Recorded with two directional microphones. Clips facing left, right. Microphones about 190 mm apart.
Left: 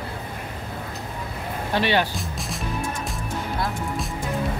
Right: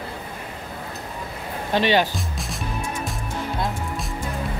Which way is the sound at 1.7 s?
20° right (ahead or behind).